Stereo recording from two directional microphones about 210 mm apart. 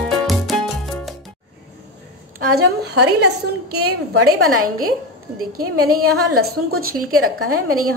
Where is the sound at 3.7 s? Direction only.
90° right.